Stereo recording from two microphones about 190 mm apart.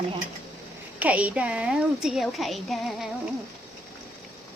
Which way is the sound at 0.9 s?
10° right (ahead or behind).